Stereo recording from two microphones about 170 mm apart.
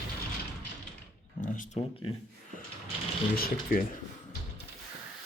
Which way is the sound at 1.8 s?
30° left (ahead or behind).